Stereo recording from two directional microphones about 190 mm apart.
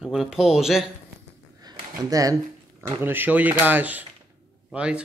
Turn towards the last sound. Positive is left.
turn(degrees=-5)  # may be behind; listen again after turning